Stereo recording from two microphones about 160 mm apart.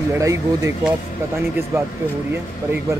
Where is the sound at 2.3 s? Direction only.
15° right (ahead or behind).